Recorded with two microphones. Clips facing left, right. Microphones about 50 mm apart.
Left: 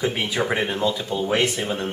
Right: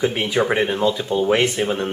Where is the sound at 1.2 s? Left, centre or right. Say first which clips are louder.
Right 3 dB; right.